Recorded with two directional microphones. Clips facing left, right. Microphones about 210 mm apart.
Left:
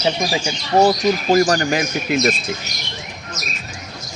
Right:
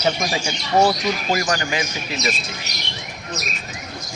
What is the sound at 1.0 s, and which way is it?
Speech, 40° left (ahead or behind).